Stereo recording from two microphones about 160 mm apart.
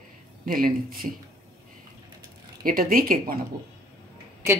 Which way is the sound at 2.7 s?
65° right (ahead or behind).